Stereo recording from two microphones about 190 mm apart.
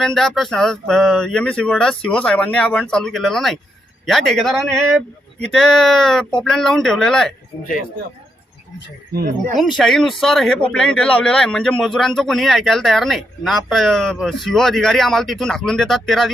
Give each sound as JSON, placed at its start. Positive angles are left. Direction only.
{"t": 0.0, "sound": "speech", "side_deg": 0}
{"t": 9.1, "sound": "speech", "side_deg": -45}
{"t": 9.6, "sound": "speech", "side_deg": 0}